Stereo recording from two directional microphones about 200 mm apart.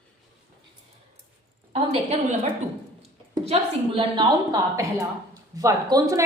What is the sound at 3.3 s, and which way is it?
A woman's voice, 25° right (ahead or behind).